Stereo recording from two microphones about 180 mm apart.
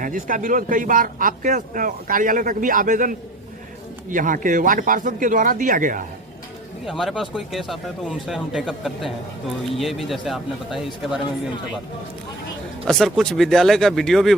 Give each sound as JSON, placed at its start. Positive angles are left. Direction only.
{"t": 0.0, "sound": "speech", "side_deg": -50}
{"t": 6.8, "sound": "speech", "side_deg": 0}
{"t": 12.9, "sound": "speech", "side_deg": 0}